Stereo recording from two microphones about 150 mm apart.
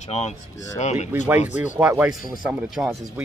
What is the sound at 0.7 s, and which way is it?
Speech, 50° left (ahead or behind).